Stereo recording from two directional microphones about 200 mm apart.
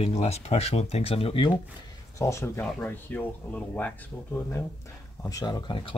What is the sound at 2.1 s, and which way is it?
Speech, 15° left (ahead or behind).